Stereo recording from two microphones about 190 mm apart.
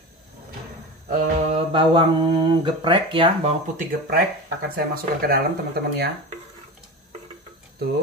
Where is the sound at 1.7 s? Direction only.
25° right (ahead or behind).